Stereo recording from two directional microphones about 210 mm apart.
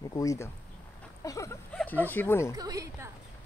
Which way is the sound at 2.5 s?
15° right (ahead or behind).